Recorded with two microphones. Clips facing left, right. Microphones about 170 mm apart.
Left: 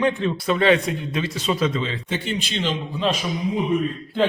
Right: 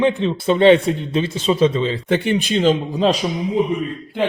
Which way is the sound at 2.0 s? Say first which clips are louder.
Right 8 dB; 65° right (ahead or behind).